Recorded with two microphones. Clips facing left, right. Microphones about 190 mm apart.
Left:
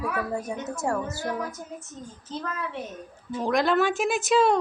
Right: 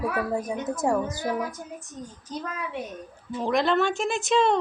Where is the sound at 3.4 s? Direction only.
Centre (ahead or behind).